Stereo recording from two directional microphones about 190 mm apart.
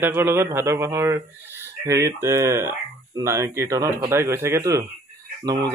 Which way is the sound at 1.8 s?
15° right (ahead or behind).